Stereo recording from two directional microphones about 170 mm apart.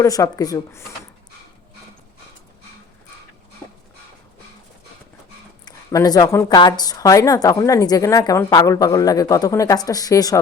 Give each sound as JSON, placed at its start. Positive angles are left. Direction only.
{"t": 0.0, "sound": "a woman's voice", "side_deg": 20}
{"t": 5.6, "sound": "a woman's voice", "side_deg": 20}